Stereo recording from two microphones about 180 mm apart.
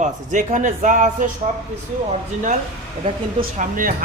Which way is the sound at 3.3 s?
45° right (ahead or behind).